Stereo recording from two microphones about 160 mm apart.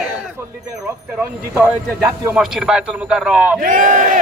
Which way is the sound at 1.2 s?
10° right (ahead or behind).